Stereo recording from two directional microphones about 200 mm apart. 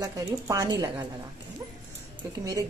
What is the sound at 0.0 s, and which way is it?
A woman's voice, 15° right (ahead or behind).